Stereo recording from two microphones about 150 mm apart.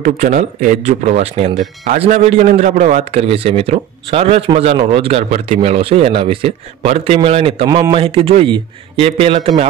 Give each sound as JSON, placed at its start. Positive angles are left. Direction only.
{"t": 0.0, "sound": "a man's voice", "side_deg": -55}
{"t": 7.7, "sound": "a man's voice", "side_deg": -25}
{"t": 8.0, "sound": "a man's voice", "side_deg": -40}